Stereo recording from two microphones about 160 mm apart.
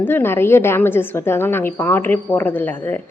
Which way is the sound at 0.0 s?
15° left (ahead or behind).